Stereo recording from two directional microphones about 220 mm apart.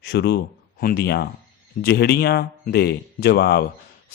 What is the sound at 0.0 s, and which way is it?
A man's voice, 45° left (ahead or behind).